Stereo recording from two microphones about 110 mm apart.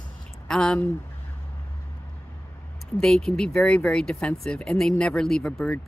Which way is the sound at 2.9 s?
5° left (ahead or behind).